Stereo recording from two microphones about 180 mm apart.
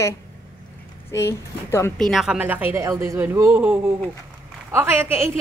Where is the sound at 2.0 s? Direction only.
Centre (ahead or behind).